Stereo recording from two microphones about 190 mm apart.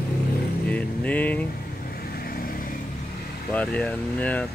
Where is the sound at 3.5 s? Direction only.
5° left (ahead or behind).